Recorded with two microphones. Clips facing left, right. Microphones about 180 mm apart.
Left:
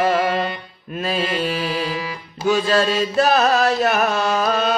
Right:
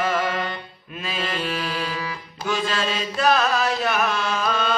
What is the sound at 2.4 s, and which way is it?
Carnatic music, 40° left (ahead or behind).